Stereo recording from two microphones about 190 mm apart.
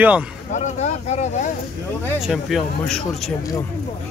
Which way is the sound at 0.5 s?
35° left (ahead or behind).